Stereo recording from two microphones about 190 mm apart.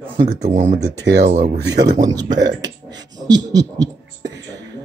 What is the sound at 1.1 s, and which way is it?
Speech, 65° right (ahead or behind).